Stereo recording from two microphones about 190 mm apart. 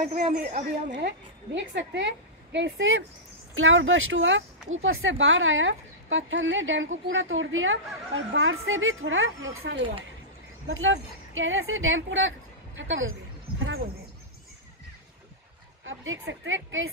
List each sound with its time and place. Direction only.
0.0 s speech: 50° right (ahead or behind)
0.9 s a woman's voice: 70° right (ahead or behind)
3.5 s a woman's voice: 90° right
15.8 s a woman's voice: 90° right